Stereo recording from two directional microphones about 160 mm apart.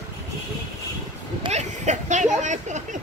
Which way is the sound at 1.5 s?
45° right (ahead or behind).